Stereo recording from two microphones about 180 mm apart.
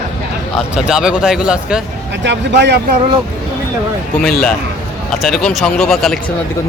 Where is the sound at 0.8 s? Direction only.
5° right (ahead or behind).